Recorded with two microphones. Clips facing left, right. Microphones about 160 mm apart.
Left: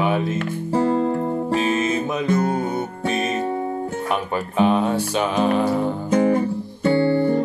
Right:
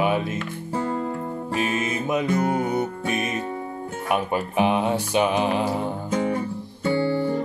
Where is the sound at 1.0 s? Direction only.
60° left (ahead or behind).